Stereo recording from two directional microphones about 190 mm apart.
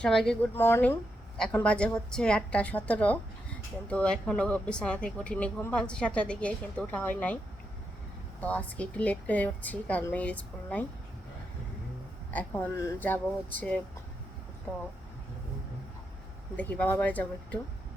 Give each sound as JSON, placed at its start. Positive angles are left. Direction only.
{"t": 0.0, "sound": "a woman's voice", "side_deg": 5}
{"t": 8.4, "sound": "a woman's voice", "side_deg": 10}
{"t": 12.3, "sound": "a woman's voice", "side_deg": 10}
{"t": 14.7, "sound": "a woman's voice", "side_deg": 10}
{"t": 16.6, "sound": "a woman's voice", "side_deg": 10}